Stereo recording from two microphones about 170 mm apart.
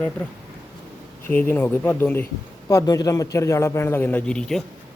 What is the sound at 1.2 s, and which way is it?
A man's voice, 10° left (ahead or behind).